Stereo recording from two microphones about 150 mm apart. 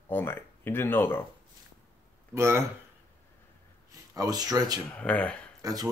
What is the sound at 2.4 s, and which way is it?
Speech, 20° right (ahead or behind).